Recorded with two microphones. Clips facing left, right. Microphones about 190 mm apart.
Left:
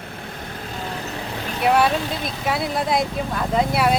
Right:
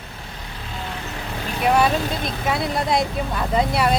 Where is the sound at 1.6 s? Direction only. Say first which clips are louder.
Even; centre (ahead or behind).